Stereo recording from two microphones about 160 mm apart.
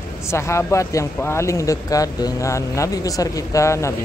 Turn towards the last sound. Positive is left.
turn(degrees=20)  # may be behind; listen again after turning